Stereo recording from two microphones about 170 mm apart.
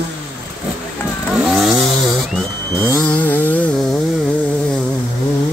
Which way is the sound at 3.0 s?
10° left (ahead or behind).